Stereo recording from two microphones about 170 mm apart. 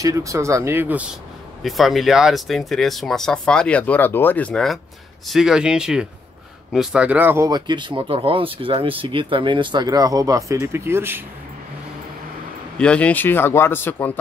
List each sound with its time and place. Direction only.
0.0 s speech: 20° right (ahead or behind)
12.7 s a man's voice: 5° left (ahead or behind)